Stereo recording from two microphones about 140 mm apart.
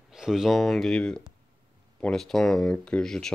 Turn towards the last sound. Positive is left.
turn(degrees=5)  # may be behind; listen again after turning